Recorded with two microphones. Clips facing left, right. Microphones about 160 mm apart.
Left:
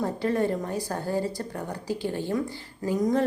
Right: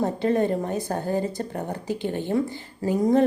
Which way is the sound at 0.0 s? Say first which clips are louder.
Right 3 dB; 20° right (ahead or behind).